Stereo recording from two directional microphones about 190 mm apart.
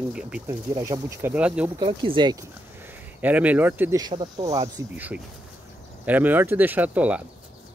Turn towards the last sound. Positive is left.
turn(degrees=-5)  # may be behind; listen again after turning